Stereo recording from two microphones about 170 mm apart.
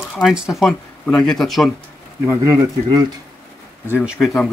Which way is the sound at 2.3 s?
20° right (ahead or behind).